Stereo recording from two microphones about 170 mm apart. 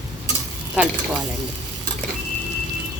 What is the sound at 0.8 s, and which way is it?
Speech, 10° right (ahead or behind).